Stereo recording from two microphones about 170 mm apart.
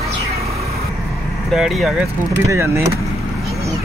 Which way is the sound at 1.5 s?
Centre (ahead or behind).